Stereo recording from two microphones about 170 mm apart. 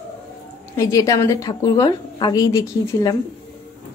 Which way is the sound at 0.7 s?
20° left (ahead or behind).